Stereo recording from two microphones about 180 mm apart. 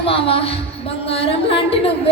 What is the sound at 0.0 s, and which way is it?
Speech, 30° left (ahead or behind).